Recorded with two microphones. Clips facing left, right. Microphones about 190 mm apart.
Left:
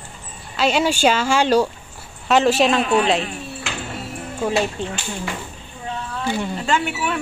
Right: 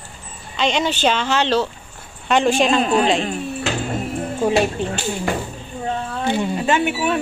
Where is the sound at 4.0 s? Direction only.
15° right (ahead or behind).